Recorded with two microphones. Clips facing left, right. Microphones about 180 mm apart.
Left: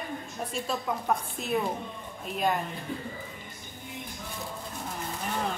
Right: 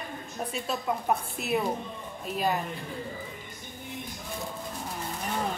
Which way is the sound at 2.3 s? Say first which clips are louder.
Right 2 dB; 40° right (ahead or behind).